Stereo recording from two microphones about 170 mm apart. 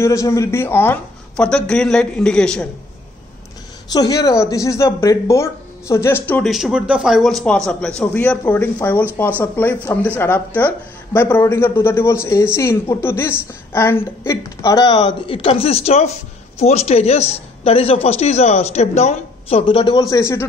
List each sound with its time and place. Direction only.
0.0 s speech: 20° left (ahead or behind)
3.9 s speech: 20° left (ahead or behind)
6.5 s a woman's voice: 5° right (ahead or behind); by 20.4 s 15° left (ahead or behind)